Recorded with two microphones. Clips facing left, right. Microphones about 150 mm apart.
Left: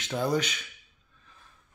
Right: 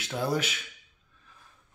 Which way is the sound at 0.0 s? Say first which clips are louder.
Left 2 dB; 5° right (ahead or behind).